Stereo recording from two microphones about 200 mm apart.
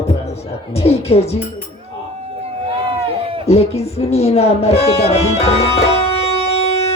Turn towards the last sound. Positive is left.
turn(degrees=30)  # may be behind; listen again after turning